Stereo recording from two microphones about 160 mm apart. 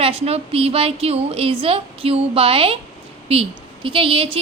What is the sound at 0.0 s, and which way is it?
A woman's voice, 35° right (ahead or behind).